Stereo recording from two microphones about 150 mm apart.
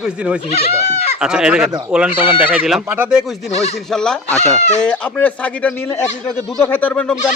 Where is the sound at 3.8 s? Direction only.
5° left (ahead or behind).